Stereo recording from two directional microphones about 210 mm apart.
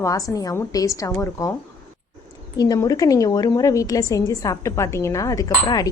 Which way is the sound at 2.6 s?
15° left (ahead or behind).